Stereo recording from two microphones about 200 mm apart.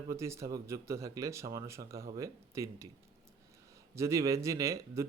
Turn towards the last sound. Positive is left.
turn(degrees=-15)  # may be behind; listen again after turning